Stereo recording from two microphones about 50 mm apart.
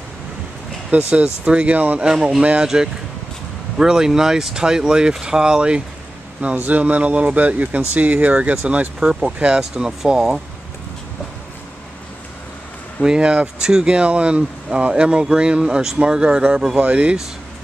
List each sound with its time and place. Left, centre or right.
0.9 s speech: right
3.7 s speech: centre
6.4 s speech: right; by 10.4 s centre
13.0 s speech: centre